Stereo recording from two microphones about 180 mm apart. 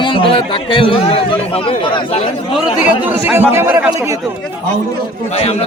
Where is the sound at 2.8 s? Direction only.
10° right (ahead or behind).